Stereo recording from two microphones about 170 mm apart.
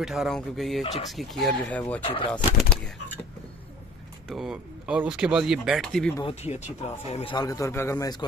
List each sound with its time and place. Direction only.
0.0 s speech: centre (ahead or behind)
4.3 s speech: 5° right (ahead or behind)
6.2 s speech: 40° left (ahead or behind)
7.3 s a man's voice: 20° left (ahead or behind)